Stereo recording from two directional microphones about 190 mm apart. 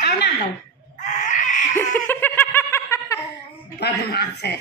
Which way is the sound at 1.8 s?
10° left (ahead or behind).